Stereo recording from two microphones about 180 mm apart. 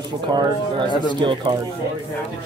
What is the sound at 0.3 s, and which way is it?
Speech, 25° right (ahead or behind).